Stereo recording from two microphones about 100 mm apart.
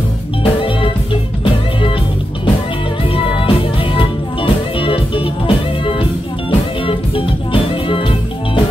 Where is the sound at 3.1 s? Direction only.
60° left (ahead or behind).